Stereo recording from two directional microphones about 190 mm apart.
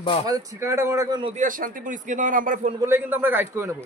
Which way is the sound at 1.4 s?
45° right (ahead or behind).